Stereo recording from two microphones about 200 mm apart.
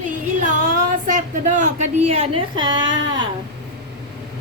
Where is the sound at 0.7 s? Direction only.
40° right (ahead or behind); by 2.9 s 20° right (ahead or behind).